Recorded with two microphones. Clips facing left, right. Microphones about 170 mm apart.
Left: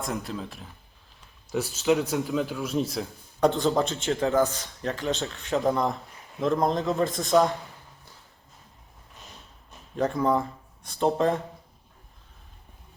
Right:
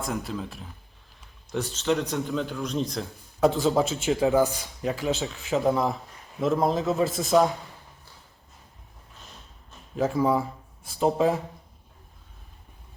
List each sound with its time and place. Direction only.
0.0 s a man's voice: centre (ahead or behind)
9.9 s speech: 5° right (ahead or behind)